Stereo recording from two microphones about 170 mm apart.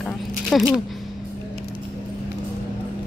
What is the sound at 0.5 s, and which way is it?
Speech, centre (ahead or behind).